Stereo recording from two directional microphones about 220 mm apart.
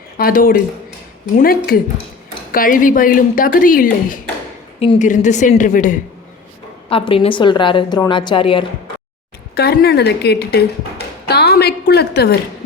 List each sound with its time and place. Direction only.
0.2 s speech: 40° left (ahead or behind)
6.9 s a woman's voice: 25° left (ahead or behind)
9.6 s speech: 45° left (ahead or behind)